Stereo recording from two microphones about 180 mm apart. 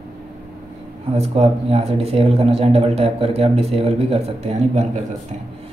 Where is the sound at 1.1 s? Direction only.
35° right (ahead or behind).